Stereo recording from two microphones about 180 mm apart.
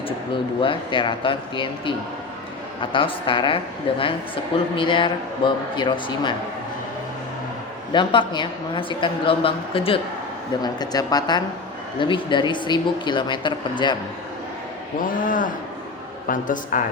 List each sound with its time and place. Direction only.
0.6 s a woman's voice: 25° left (ahead or behind)
7.9 s a woman's voice: 25° left (ahead or behind)
15.0 s speech: 50° left (ahead or behind)